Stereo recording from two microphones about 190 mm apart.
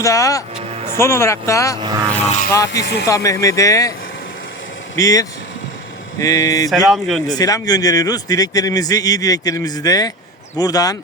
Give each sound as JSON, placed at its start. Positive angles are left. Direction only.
{"t": 0.0, "sound": "speech", "side_deg": 15}
{"t": 1.8, "sound": "speech", "side_deg": -20}
{"t": 2.2, "sound": "speech", "side_deg": 35}
{"t": 2.7, "sound": "speech", "side_deg": 60}
{"t": 3.1, "sound": "speech", "side_deg": 15}
{"t": 4.9, "sound": "speech", "side_deg": 20}
{"t": 6.7, "sound": "speech", "side_deg": 0}
{"t": 7.3, "sound": "a man's voice", "side_deg": 20}